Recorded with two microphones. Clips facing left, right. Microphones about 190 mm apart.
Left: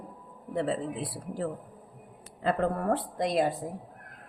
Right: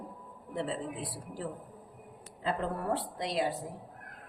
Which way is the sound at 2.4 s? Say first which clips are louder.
Left 6 dB; 55° left (ahead or behind).